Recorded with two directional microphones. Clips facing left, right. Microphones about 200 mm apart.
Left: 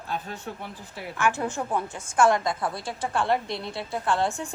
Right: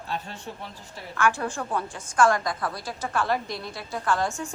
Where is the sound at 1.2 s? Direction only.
20° left (ahead or behind).